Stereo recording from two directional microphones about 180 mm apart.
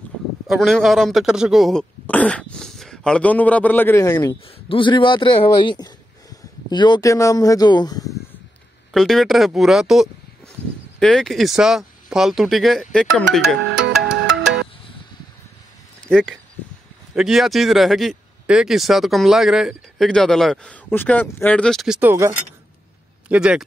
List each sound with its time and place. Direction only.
0.5 s speech: centre (ahead or behind); by 8.1 s 20° left (ahead or behind)
8.9 s speech: centre (ahead or behind)
13.9 s ringtone: 5° right (ahead or behind)
16.1 s speech: 5° left (ahead or behind)
23.2 s speech: 5° right (ahead or behind)